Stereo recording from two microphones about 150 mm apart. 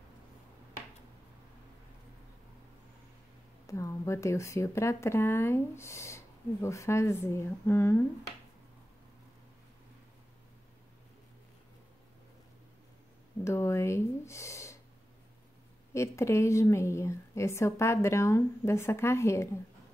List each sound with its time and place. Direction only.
3.6 s speech: 20° left (ahead or behind)
13.4 s speech: 20° left (ahead or behind)
15.9 s speech: 20° left (ahead or behind)